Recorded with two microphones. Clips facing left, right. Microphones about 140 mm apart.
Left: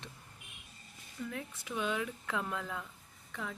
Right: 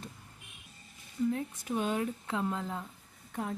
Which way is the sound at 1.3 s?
40° right (ahead or behind).